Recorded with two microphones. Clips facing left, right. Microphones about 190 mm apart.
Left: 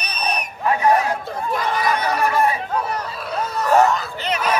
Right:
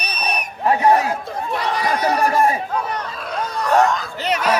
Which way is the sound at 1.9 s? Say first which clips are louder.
Right 3 dB; 35° right (ahead or behind).